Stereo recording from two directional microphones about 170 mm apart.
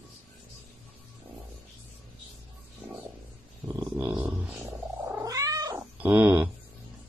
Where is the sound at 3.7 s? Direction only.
10° right (ahead or behind).